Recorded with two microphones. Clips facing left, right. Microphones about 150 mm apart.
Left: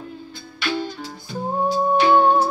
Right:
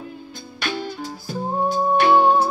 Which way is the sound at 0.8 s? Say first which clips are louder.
Right 2 dB; 5° right (ahead or behind).